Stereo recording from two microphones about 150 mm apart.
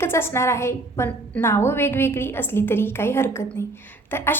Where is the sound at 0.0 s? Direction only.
15° left (ahead or behind).